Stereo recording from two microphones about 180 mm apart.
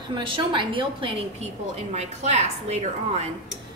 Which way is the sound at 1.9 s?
40° right (ahead or behind).